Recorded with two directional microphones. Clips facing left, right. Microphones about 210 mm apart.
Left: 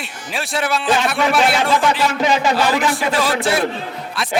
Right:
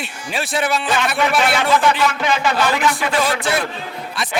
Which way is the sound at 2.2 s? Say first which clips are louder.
Left 2 dB; 35° left (ahead or behind).